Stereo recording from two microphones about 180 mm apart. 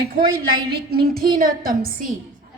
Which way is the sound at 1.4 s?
50° right (ahead or behind).